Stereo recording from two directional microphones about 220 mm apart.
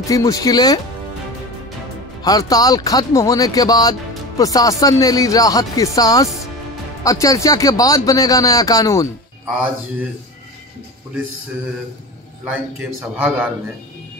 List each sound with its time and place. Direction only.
0.0 s speech: 15° left (ahead or behind)
2.2 s speech: 15° left (ahead or behind)
13.1 s a man's voice: 5° right (ahead or behind)